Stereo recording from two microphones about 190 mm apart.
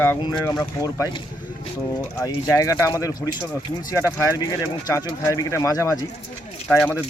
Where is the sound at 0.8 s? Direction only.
20° left (ahead or behind).